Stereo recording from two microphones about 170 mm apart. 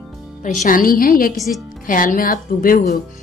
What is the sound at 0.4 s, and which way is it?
Speech, 50° left (ahead or behind).